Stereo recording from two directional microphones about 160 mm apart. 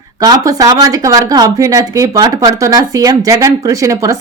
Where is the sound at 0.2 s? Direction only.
25° right (ahead or behind).